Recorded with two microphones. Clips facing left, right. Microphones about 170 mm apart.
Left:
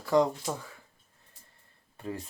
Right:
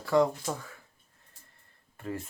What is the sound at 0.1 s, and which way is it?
Speech, 20° left (ahead or behind).